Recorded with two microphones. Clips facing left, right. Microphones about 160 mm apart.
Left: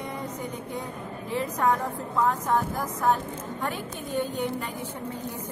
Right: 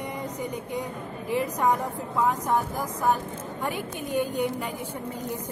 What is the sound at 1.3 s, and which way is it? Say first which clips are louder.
Speech: right 1 dB; 10° right (ahead or behind).